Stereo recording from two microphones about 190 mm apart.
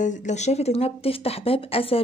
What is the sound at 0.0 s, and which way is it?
Speech, 40° left (ahead or behind).